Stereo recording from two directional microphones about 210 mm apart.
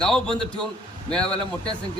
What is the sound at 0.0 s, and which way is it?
A man's voice, 5° left (ahead or behind).